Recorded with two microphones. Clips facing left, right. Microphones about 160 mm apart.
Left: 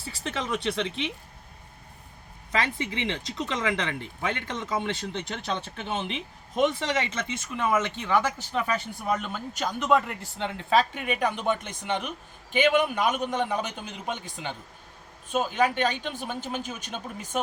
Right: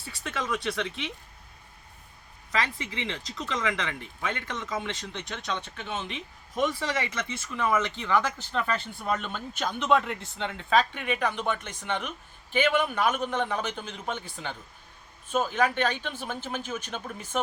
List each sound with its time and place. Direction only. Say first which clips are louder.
0.2 s speech: left 1 dB; 25° left (ahead or behind)
2.5 s a man's voice: left 2 dB; 30° left (ahead or behind); by 17.4 s 10° left (ahead or behind)